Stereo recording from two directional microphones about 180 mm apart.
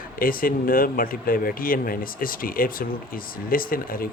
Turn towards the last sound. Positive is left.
turn(degrees=55)  # may be behind; listen again after turning